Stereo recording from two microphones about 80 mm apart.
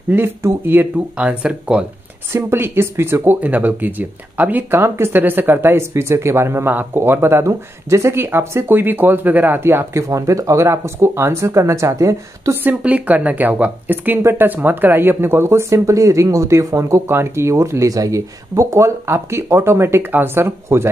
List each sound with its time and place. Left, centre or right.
0.1 s speech: right; by 1.9 s centre
2.3 s speech: right
12.6 s speech: centre